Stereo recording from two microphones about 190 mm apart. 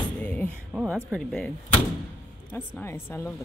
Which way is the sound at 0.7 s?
Centre (ahead or behind).